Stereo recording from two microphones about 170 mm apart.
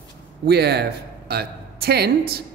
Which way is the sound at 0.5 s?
75° right (ahead or behind).